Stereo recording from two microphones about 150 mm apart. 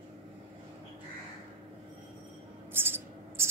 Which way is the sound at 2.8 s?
15° right (ahead or behind).